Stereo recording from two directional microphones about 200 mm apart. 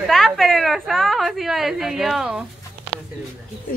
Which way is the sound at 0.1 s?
Centre (ahead or behind).